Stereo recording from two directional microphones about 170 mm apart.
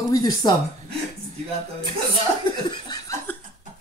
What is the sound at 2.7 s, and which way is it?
Laughter, 25° left (ahead or behind).